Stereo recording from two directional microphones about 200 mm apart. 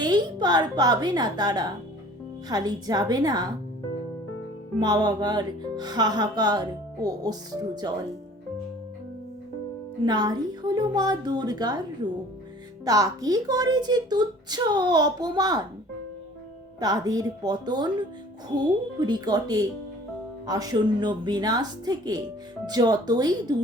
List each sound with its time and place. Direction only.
0.0 s speech: 20° right (ahead or behind)
4.8 s speech: 20° right (ahead or behind)
10.0 s speech: 20° right (ahead or behind)
12.8 s speech: 20° right (ahead or behind)
16.8 s speech: 20° right (ahead or behind)